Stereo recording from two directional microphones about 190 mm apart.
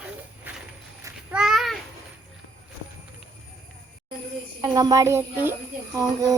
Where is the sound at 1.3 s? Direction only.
Centre (ahead or behind).